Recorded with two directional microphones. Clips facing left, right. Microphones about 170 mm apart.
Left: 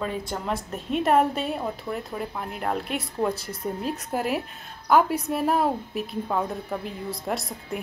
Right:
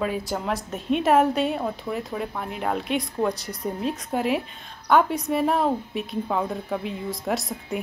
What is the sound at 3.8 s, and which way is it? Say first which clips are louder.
A woman's voice: right 3 dB; centre (ahead or behind).